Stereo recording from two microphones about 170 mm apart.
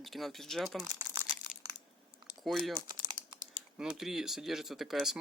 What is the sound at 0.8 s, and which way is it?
Crumpling, 20° right (ahead or behind).